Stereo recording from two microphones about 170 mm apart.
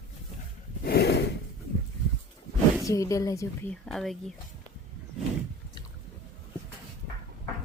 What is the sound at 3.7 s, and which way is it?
Speech, centre (ahead or behind).